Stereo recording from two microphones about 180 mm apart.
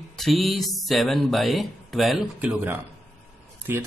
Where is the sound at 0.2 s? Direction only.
Centre (ahead or behind).